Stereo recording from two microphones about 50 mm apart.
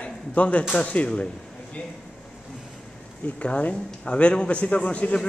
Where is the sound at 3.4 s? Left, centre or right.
Left.